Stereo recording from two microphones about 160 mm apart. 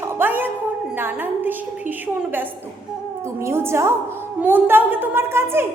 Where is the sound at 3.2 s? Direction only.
15° right (ahead or behind).